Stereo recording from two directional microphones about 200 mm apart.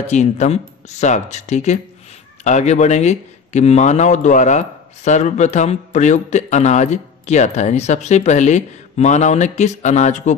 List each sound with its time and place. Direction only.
0.0 s a man's voice: 35° left (ahead or behind)